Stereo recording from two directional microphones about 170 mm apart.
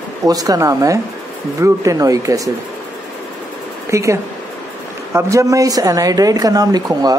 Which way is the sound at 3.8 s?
15° right (ahead or behind).